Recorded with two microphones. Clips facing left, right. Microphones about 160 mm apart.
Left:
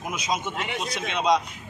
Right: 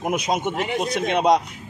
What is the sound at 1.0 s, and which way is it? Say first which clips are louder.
Speech: right 5 dB; 50° right (ahead or behind).